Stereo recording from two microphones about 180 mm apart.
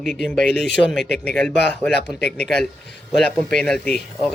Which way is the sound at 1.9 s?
65° left (ahead or behind).